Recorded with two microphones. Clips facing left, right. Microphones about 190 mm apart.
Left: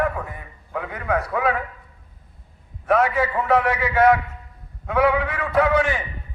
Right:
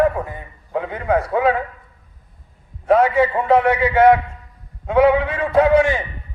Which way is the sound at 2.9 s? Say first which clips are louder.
Right 5 dB; 25° right (ahead or behind).